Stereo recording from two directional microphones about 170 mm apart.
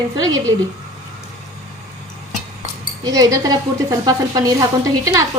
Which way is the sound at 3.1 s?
20° right (ahead or behind).